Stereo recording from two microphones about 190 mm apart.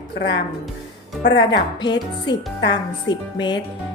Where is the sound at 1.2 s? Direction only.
65° left (ahead or behind).